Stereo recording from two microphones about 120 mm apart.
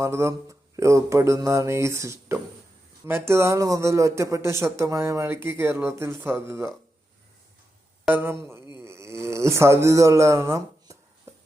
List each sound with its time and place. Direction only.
0.0 s a man's voice: 25° right (ahead or behind)
8.1 s speech: 15° right (ahead or behind)
8.7 s a sound: 25° right (ahead or behind)